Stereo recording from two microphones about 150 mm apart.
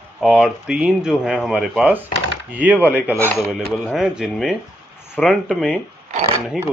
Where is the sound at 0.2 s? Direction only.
5° right (ahead or behind).